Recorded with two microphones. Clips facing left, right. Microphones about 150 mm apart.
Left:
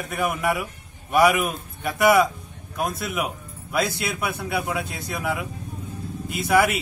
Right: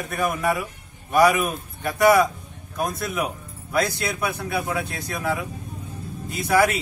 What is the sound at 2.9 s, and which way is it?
Speech, 20° left (ahead or behind).